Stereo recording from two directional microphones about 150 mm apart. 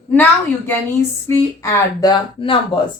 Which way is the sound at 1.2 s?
20° left (ahead or behind).